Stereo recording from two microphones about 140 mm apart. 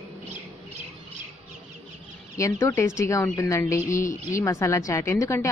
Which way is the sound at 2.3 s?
20° left (ahead or behind).